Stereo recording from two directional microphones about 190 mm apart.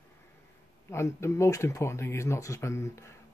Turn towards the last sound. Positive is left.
turn(degrees=15)  # may be behind; listen again after turning